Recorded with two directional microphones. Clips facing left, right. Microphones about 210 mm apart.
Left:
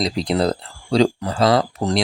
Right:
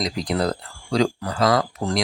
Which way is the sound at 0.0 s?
25° left (ahead or behind).